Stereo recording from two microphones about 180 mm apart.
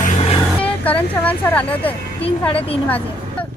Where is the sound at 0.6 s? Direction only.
10° left (ahead or behind).